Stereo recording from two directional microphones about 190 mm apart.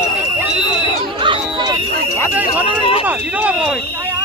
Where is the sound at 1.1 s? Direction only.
25° right (ahead or behind).